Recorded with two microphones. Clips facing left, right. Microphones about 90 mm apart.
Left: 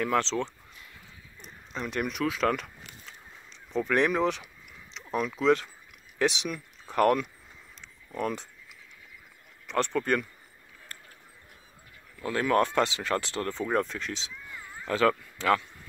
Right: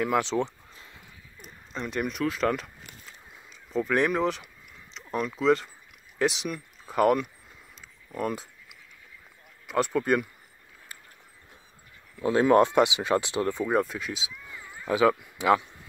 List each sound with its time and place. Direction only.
0.0 s speech: 10° right (ahead or behind)
1.4 s speech: centre (ahead or behind)
7.8 s a sound: 5° right (ahead or behind)
9.7 s speech: 5° right (ahead or behind)
10.9 s mechanisms: 5° right (ahead or behind)
12.2 s speech: 20° right (ahead or behind)